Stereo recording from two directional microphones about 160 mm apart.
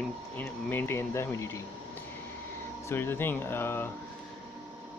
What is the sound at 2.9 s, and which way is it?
Speech, 15° left (ahead or behind).